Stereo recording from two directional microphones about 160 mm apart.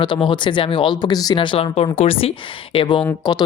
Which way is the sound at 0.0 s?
30° left (ahead or behind).